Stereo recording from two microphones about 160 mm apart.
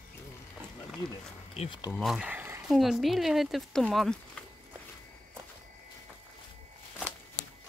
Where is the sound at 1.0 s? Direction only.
35° left (ahead or behind).